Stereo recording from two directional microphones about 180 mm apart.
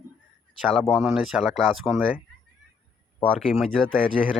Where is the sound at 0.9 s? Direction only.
5° right (ahead or behind).